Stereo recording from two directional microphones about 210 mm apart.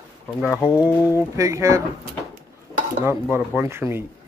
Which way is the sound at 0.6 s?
20° left (ahead or behind).